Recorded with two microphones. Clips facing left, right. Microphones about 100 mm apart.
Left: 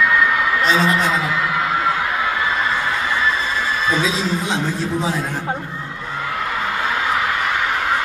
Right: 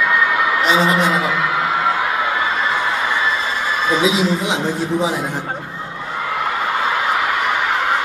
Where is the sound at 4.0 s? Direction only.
15° right (ahead or behind).